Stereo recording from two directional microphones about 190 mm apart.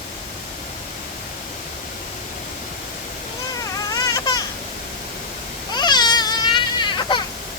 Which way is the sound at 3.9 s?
20° left (ahead or behind).